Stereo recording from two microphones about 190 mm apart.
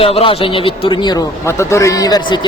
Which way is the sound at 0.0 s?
30° left (ahead or behind).